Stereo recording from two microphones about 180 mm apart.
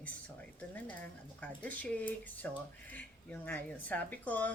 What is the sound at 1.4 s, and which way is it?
Speech, 10° left (ahead or behind).